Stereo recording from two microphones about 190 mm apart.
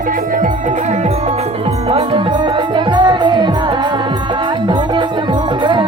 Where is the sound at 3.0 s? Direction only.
20° right (ahead or behind).